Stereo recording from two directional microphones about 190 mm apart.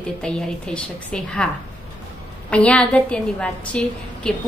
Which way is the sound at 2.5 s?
5° left (ahead or behind).